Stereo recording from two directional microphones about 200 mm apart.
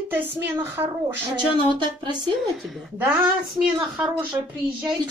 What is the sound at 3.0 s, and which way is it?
A child's voice, 10° right (ahead or behind).